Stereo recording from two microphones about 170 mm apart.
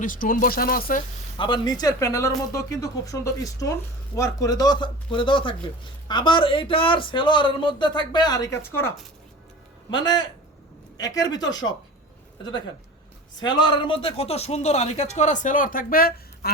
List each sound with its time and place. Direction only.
0.0 s speech: 55° left (ahead or behind)
1.4 s speech: 30° left (ahead or behind)
9.9 s speech: 25° left (ahead or behind)
13.4 s speech: 25° left (ahead or behind); by 16.5 s 60° left (ahead or behind)